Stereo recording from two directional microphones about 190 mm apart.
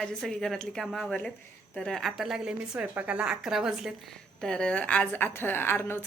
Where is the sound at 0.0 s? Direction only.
Centre (ahead or behind).